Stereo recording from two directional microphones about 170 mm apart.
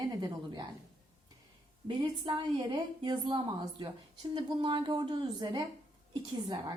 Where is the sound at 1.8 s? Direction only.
30° right (ahead or behind).